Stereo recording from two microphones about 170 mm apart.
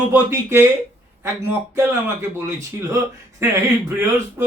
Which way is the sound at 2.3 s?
15° right (ahead or behind).